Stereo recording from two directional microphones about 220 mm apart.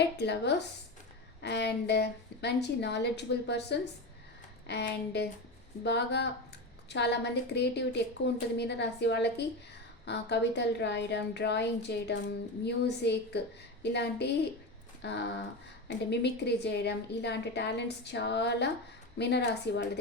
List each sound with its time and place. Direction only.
0.0 s a woman's voice: 50° left (ahead or behind)